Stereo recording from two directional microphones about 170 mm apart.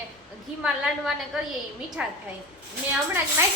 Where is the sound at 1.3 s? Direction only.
5° right (ahead or behind).